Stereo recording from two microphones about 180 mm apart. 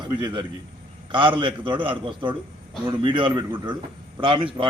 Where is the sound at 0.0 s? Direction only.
25° right (ahead or behind).